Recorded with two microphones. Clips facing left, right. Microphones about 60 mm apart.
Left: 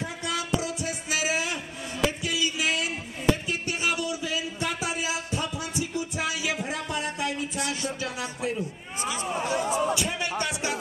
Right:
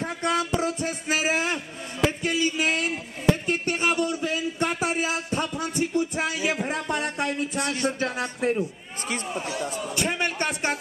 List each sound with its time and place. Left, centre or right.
0.0 s music: right
2.0 s a sound: right
5.6 s speech: right
9.3 s speech: left
9.9 s a sound: right
10.4 s music: right